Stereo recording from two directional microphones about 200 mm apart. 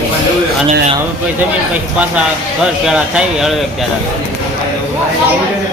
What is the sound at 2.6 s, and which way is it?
Speech, 5° right (ahead or behind).